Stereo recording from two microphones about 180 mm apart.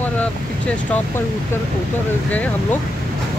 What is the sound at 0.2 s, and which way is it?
Speech, 5° left (ahead or behind).